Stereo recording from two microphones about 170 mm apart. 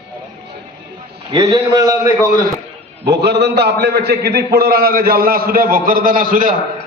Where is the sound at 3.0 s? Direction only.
75° right (ahead or behind); by 6.6 s 55° right (ahead or behind).